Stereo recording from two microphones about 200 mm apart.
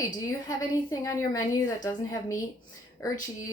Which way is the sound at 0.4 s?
15° left (ahead or behind).